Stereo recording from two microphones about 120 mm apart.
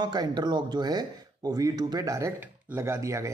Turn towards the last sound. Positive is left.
turn(degrees=-25)  # may be behind; listen again after turning